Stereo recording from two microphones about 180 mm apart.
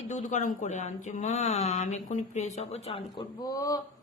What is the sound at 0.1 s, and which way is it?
Speech, 40° left (ahead or behind).